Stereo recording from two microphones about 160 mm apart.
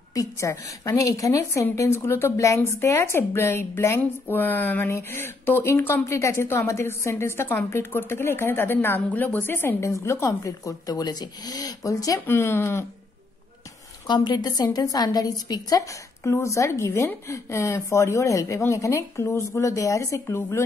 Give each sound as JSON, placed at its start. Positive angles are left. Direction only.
{"t": 0.1, "sound": "a woman's voice", "side_deg": 20}
{"t": 14.0, "sound": "a woman's voice", "side_deg": 25}